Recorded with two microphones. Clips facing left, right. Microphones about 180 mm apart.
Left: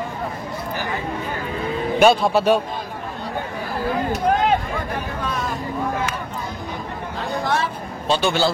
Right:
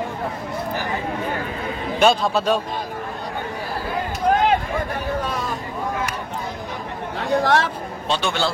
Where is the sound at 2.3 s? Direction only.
10° left (ahead or behind).